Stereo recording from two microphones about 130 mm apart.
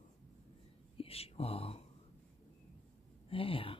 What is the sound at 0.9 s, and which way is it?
Speech, 50° left (ahead or behind).